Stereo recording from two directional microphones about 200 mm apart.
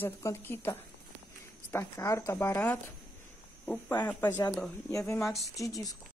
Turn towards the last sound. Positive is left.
turn(degrees=15)  # may be behind; listen again after turning